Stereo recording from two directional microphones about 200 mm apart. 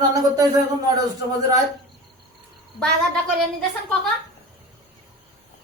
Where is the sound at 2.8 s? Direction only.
Centre (ahead or behind).